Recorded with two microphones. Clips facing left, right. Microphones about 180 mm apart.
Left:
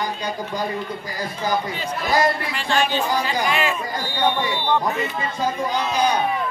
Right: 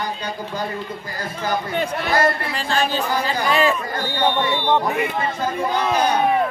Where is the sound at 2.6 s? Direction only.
40° right (ahead or behind).